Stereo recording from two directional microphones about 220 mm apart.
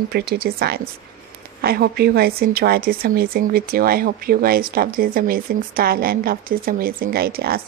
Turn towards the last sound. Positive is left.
turn(degrees=-45)  # may be behind; listen again after turning